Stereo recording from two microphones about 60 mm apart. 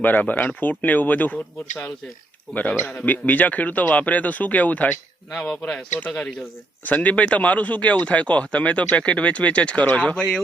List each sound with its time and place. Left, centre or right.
0.0 s speech: left
2.6 s speech: left
10.2 s speech: centre